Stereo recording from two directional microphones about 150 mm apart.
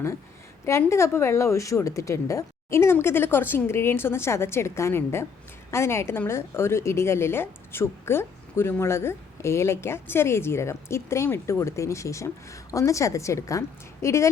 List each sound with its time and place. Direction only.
0.6 s a woman's voice: 20° left (ahead or behind)